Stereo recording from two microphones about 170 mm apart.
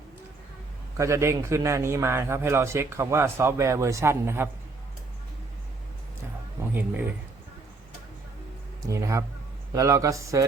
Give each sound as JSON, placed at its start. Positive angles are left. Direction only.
{"t": 0.9, "sound": "a man's voice", "side_deg": -15}
{"t": 6.7, "sound": "speech", "side_deg": -10}
{"t": 8.9, "sound": "a man's voice", "side_deg": -15}